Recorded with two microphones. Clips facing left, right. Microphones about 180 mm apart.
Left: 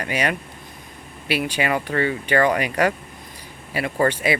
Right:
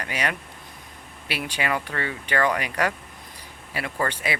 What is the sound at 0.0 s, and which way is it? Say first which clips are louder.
Speech: left 5 dB; 15° left (ahead or behind).